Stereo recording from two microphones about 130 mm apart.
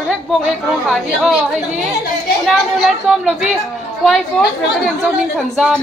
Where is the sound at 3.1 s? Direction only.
5° right (ahead or behind).